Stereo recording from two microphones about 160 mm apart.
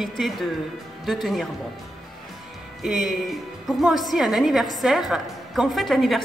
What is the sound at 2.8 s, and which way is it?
A woman's voice, centre (ahead or behind).